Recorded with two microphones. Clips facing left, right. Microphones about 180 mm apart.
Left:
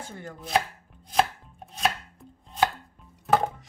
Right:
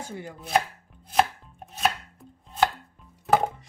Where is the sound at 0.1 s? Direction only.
10° right (ahead or behind).